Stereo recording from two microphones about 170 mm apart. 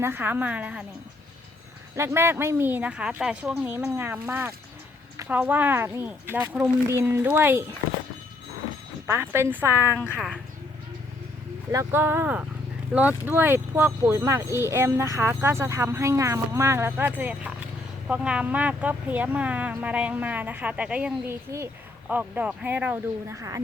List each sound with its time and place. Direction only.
0.0 s speech: 10° right (ahead or behind)
2.0 s speech: 15° right (ahead or behind)
9.0 s speech: 15° right (ahead or behind)
11.7 s speech: 15° right (ahead or behind)